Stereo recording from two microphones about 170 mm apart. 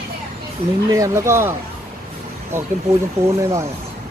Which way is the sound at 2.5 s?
15° right (ahead or behind).